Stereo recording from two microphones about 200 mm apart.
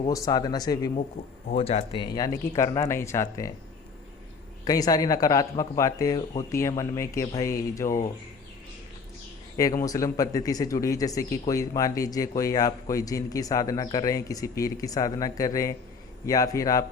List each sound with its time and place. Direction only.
0.1 s speech: 20° left (ahead or behind)
1.5 s speech: 30° left (ahead or behind)
4.6 s speech: 20° left (ahead or behind)
9.8 s speech: 15° left (ahead or behind)